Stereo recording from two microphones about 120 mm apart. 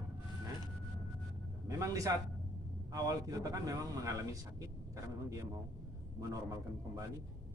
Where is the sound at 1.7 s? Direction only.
30° right (ahead or behind).